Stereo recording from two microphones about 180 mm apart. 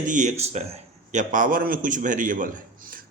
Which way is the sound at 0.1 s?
40° right (ahead or behind).